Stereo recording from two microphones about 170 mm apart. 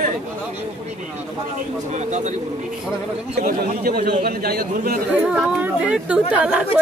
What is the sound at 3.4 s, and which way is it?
A man's voice, 60° right (ahead or behind).